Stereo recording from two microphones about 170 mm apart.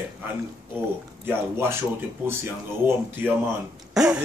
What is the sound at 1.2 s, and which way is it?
Speech, 15° right (ahead or behind).